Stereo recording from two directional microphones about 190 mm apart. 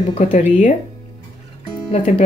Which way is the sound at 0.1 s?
35° left (ahead or behind).